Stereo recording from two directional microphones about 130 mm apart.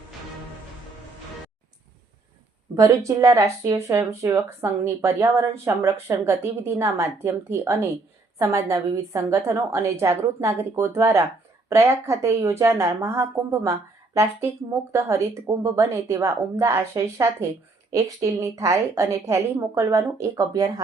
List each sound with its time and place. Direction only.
2.7 s a woman's voice: 25° right (ahead or behind)